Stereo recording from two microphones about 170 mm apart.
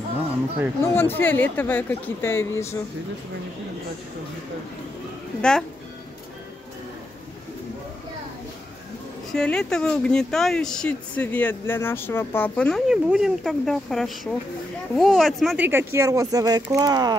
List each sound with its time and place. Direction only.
0.9 s speech: 10° left (ahead or behind)
5.4 s speech: 5° left (ahead or behind)
9.3 s speech: 5° left (ahead or behind)
15.5 s speech: 10° right (ahead or behind)